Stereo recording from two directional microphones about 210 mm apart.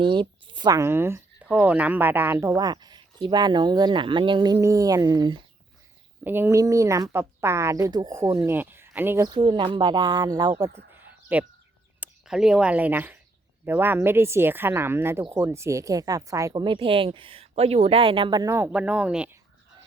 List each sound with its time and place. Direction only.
0.0 s speech: 25° right (ahead or behind); by 19.4 s 5° right (ahead or behind)